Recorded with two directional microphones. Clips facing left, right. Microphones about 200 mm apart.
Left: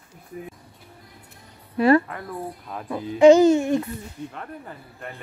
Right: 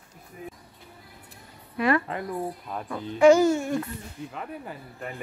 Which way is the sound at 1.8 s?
30° left (ahead or behind).